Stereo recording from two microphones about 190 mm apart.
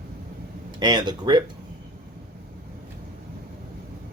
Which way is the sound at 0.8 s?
25° right (ahead or behind).